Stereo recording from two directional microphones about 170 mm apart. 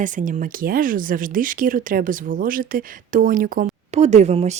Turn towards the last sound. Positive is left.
turn(degrees=-40)  # may be behind; listen again after turning